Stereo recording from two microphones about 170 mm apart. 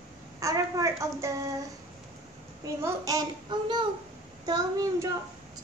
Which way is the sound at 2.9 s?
20° right (ahead or behind).